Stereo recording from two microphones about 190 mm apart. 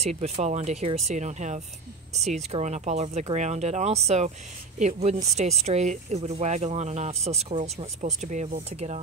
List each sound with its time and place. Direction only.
0.0 s speech: 35° right (ahead or behind)